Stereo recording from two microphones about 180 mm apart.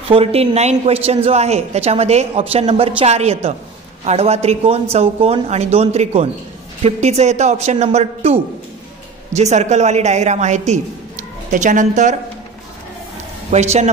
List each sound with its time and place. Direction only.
0.1 s a woman's voice: 35° right (ahead or behind)
13.5 s a woman's voice: 40° right (ahead or behind)